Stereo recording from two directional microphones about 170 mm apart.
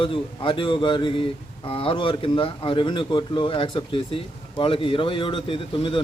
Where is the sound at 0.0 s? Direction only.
30° left (ahead or behind).